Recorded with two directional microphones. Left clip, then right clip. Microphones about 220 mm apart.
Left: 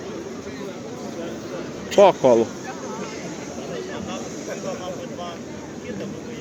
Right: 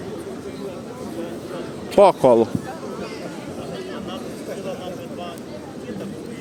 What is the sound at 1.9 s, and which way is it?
Speech, 25° right (ahead or behind).